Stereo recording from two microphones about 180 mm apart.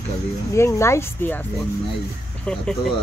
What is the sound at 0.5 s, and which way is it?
Speech, 15° left (ahead or behind).